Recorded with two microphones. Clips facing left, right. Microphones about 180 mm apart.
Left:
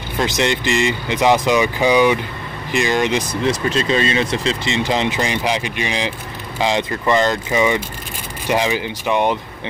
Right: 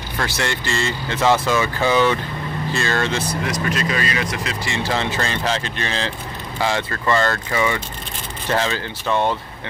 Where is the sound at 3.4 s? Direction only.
25° left (ahead or behind).